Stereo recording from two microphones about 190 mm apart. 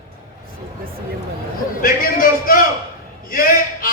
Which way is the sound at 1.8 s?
50° left (ahead or behind).